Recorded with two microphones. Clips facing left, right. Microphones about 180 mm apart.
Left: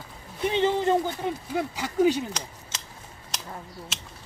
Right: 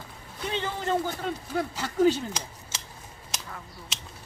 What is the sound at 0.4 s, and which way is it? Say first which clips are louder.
Speech: left 7 dB; 20° left (ahead or behind).